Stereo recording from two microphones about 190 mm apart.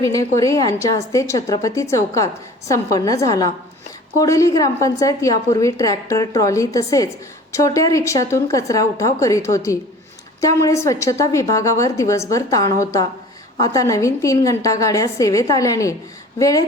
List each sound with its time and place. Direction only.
0.0 s a woman's voice: 15° left (ahead or behind)